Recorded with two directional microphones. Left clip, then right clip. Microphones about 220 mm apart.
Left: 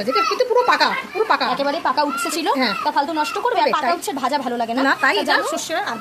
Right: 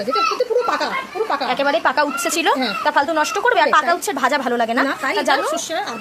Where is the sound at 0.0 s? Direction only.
40° left (ahead or behind).